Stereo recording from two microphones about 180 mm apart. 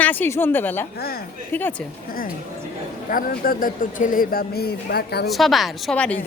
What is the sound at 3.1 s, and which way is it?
Speech, 50° left (ahead or behind).